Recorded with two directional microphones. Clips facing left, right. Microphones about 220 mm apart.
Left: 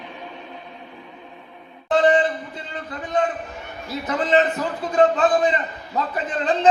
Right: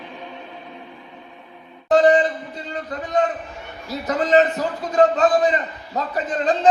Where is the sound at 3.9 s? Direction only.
40° right (ahead or behind).